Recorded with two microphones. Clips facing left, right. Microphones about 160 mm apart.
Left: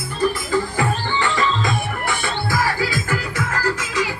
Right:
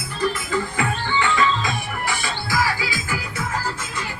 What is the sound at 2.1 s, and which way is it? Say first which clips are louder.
Music: left 3 dB; 55° left (ahead or behind).